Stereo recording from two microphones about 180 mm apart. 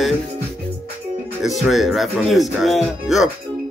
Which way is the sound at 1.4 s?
Centre (ahead or behind).